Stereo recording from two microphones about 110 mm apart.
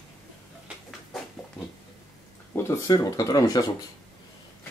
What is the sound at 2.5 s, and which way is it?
Speech, 25° left (ahead or behind).